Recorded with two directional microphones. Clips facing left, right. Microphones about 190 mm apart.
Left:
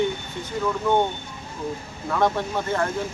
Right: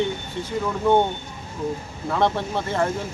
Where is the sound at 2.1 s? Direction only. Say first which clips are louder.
Right 1 dB; 25° right (ahead or behind).